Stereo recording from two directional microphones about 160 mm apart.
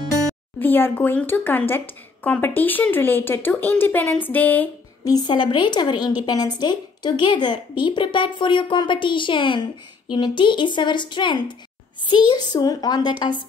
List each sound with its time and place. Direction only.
0.6 s speech: 10° left (ahead or behind)
5.0 s a woman's voice: 25° left (ahead or behind)